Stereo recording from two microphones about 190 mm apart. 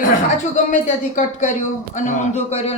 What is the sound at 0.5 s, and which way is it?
A man's voice, 40° left (ahead or behind).